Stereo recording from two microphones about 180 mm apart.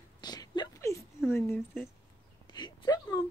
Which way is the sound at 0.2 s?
20° left (ahead or behind).